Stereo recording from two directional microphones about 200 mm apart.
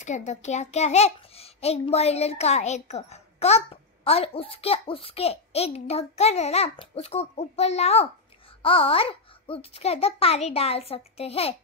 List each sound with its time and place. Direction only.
0.0 s a child's voice: 35° left (ahead or behind)